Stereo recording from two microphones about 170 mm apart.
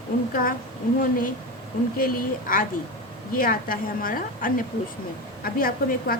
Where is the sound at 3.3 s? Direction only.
55° left (ahead or behind).